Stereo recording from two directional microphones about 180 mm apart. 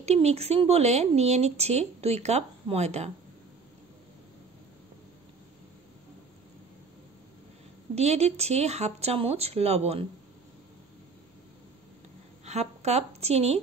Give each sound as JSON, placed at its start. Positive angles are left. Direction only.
{"t": 0.0, "sound": "speech", "side_deg": -35}
{"t": 7.9, "sound": "speech", "side_deg": -35}
{"t": 12.4, "sound": "a woman's voice", "side_deg": -40}